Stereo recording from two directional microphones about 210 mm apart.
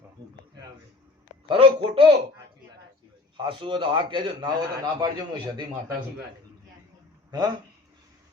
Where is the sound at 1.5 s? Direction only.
25° right (ahead or behind).